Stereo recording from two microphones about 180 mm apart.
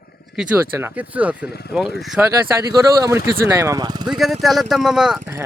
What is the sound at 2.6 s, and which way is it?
Speech, 15° right (ahead or behind).